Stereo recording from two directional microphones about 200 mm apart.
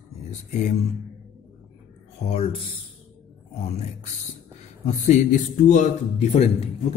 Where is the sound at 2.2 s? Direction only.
30° left (ahead or behind).